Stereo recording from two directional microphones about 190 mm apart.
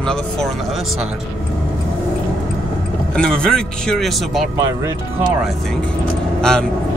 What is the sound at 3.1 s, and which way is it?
Speech, 5° left (ahead or behind).